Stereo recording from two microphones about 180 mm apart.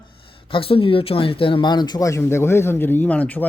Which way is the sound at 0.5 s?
30° left (ahead or behind).